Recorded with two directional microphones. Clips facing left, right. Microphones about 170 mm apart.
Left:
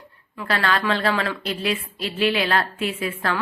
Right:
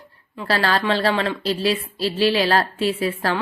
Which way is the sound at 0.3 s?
30° right (ahead or behind).